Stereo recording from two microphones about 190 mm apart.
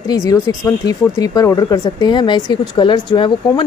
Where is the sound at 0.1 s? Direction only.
20° left (ahead or behind).